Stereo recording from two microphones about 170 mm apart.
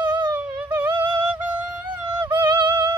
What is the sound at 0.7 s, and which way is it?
Music, 10° right (ahead or behind).